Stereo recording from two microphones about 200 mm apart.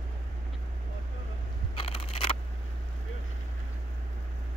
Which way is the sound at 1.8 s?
30° left (ahead or behind).